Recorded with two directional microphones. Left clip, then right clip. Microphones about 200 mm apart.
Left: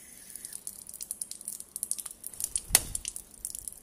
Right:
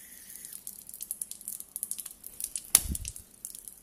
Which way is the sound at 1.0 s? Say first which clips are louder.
Left 2 dB; 25° right (ahead or behind).